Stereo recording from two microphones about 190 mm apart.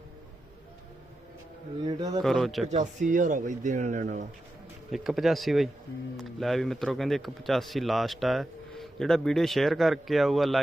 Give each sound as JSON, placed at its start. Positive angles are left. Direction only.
{"t": 1.8, "sound": "a man's voice", "side_deg": -20}
{"t": 2.2, "sound": "speech", "side_deg": 0}
{"t": 2.6, "sound": "speech", "side_deg": -40}
{"t": 4.9, "sound": "speech", "side_deg": 0}